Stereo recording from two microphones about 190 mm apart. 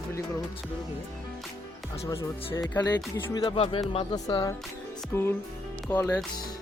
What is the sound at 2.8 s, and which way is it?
Speech, 20° left (ahead or behind).